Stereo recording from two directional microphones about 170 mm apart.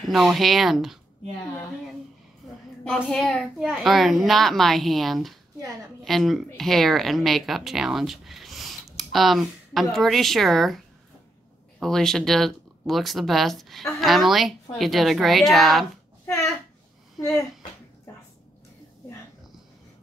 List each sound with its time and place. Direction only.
0.0 s speech: centre (ahead or behind)
3.0 s speech: centre (ahead or behind)
11.8 s speech: 5° left (ahead or behind)
16.3 s a sound: 15° left (ahead or behind)